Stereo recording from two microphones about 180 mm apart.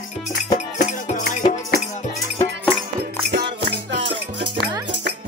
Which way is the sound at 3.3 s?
70° right (ahead or behind).